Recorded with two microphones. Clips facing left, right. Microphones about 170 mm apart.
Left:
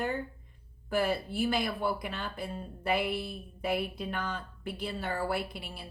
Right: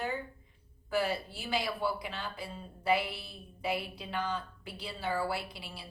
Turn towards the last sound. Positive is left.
turn(degrees=50)  # may be behind; listen again after turning